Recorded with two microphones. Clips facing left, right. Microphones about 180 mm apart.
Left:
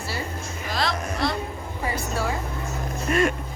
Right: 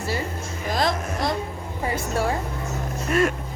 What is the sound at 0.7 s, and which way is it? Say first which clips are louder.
Speech: right 3 dB; 50° right (ahead or behind).